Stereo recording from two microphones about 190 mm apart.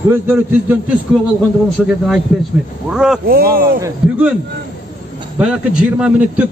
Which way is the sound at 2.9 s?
5° right (ahead or behind).